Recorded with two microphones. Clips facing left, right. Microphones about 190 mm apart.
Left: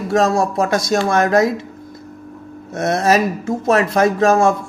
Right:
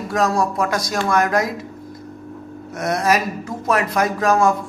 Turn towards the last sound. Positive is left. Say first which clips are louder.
# left 4 dB
turn(degrees=25)  # may be behind; listen again after turning